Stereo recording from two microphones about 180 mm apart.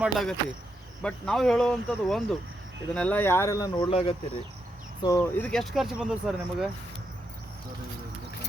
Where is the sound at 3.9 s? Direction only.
30° left (ahead or behind).